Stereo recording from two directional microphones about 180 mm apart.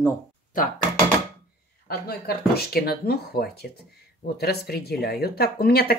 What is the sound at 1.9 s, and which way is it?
A woman's voice, 60° left (ahead or behind).